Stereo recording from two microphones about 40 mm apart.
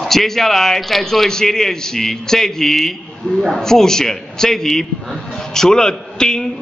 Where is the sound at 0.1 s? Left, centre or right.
Centre.